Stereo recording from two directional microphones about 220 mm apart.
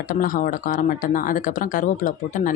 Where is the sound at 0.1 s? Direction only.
40° left (ahead or behind).